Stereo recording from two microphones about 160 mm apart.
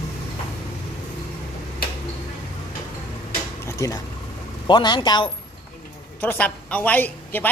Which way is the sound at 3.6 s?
20° left (ahead or behind).